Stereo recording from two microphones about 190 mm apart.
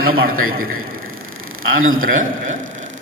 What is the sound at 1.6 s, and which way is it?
Speech, 90° right.